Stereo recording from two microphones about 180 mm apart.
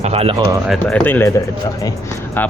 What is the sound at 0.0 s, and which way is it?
Music, 35° right (ahead or behind).